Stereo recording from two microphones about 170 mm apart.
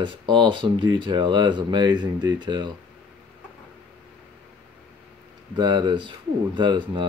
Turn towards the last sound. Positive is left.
turn(degrees=-25)  # may be behind; listen again after turning